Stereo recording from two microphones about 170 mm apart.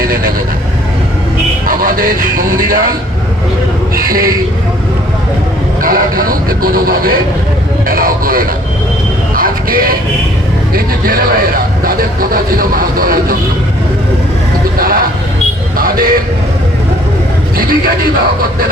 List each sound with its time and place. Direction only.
0.0 s vehicle: 60° right (ahead or behind)
1.6 s speech: 55° right (ahead or behind)
3.9 s speech: 60° right (ahead or behind)
5.8 s speech: 60° right (ahead or behind)
9.3 s a sound: 55° right (ahead or behind)
10.8 s speech: 60° right (ahead or behind)
14.8 s speech: 60° right (ahead or behind)
17.6 s speech: 60° right (ahead or behind)